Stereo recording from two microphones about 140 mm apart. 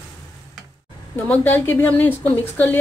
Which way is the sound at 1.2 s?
10° left (ahead or behind).